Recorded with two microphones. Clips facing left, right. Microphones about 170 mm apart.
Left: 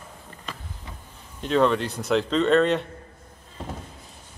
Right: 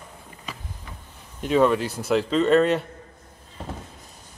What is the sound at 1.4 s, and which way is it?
Speech, 5° right (ahead or behind).